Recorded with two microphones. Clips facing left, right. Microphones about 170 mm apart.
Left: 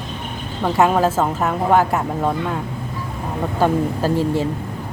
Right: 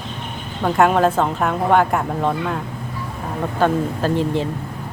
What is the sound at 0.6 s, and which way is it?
A woman's voice, 5° left (ahead or behind).